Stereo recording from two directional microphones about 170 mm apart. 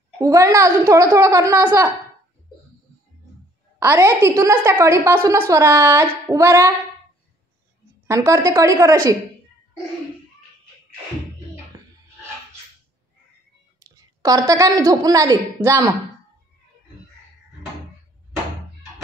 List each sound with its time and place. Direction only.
0.2 s a woman's voice: 20° right (ahead or behind)
3.8 s a woman's voice: 15° right (ahead or behind)
8.2 s a woman's voice: 15° right (ahead or behind)
11.7 s music: 20° right (ahead or behind)
13.7 s a woman's voice: 20° right (ahead or behind)